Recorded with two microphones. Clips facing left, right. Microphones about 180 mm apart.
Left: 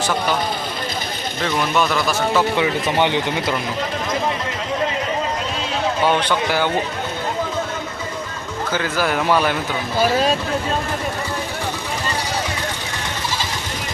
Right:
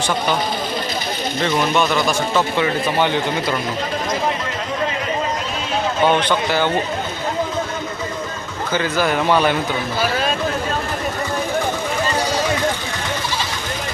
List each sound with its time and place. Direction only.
1.4 s a man's voice: centre (ahead or behind)
2.6 s speech: 15° left (ahead or behind)
6.1 s speech: 10° left (ahead or behind)
8.7 s a man's voice: 5° left (ahead or behind)